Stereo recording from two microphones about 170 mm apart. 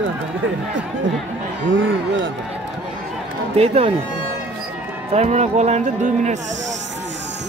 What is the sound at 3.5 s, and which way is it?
Speech, 35° right (ahead or behind).